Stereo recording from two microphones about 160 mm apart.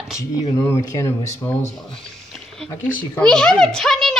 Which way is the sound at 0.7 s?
15° left (ahead or behind).